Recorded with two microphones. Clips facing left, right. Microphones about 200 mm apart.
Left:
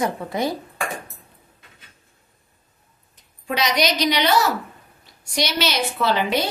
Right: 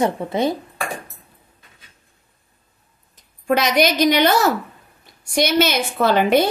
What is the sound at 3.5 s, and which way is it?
Dishes, 50° right (ahead or behind).